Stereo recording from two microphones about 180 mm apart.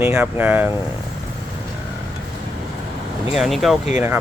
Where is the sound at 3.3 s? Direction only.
Centre (ahead or behind).